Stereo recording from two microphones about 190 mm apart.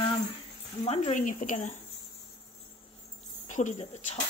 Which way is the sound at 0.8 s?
35° left (ahead or behind).